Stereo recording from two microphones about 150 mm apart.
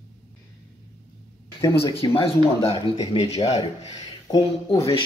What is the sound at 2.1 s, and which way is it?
Speech, 40° left (ahead or behind).